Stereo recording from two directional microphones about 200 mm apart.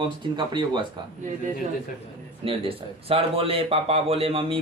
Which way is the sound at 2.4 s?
25° right (ahead or behind).